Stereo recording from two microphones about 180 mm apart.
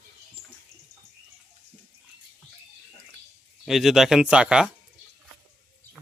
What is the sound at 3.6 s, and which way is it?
Speech, centre (ahead or behind).